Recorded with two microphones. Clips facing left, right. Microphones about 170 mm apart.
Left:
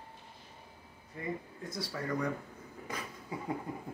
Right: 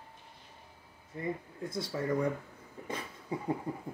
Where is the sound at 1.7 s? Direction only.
25° right (ahead or behind).